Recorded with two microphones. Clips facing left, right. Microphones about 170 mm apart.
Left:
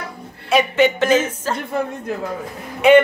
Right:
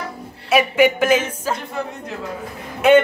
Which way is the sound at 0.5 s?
10° right (ahead or behind).